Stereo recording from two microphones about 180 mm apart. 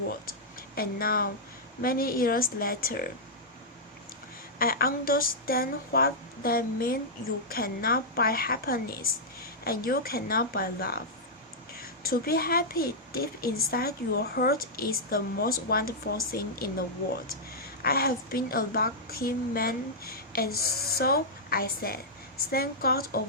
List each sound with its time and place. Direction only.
0.8 s a child's voice: 55° left (ahead or behind)
4.5 s a child's voice: 55° left (ahead or behind)